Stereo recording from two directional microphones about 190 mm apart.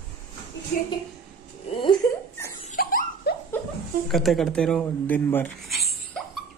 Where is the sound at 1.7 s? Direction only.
25° left (ahead or behind).